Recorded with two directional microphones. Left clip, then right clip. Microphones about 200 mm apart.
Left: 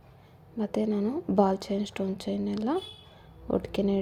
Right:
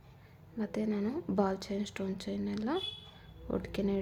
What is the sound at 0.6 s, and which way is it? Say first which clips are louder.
A woman's voice: left 6 dB; 15° left (ahead or behind).